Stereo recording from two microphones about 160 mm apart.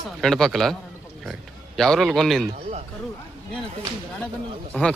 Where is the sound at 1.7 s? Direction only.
5° left (ahead or behind).